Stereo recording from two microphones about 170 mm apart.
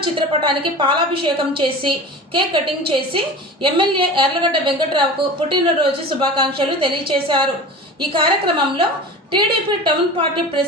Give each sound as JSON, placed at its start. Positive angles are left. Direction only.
{"t": 0.0, "sound": "a woman's voice", "side_deg": -30}
{"t": 9.6, "sound": "a woman's voice", "side_deg": -30}